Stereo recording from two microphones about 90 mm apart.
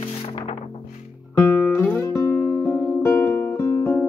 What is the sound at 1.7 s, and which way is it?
Guitar, 25° left (ahead or behind).